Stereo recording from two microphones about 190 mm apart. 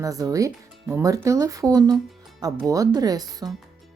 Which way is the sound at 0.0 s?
20° right (ahead or behind).